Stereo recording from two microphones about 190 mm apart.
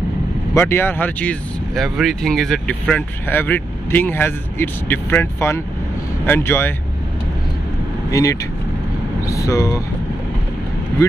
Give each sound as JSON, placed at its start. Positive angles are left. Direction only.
{"t": 0.6, "sound": "speech", "side_deg": 10}
{"t": 8.1, "sound": "speech", "side_deg": 15}